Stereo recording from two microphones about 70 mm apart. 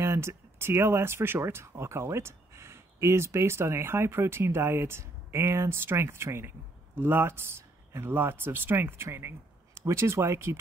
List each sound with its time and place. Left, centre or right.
0.0 s speech: right